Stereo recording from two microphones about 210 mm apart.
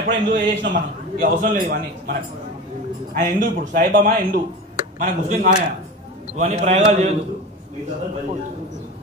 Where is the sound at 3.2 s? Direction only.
40° right (ahead or behind).